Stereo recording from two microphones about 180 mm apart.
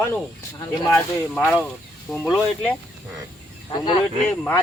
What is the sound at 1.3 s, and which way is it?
Speech, 5° left (ahead or behind).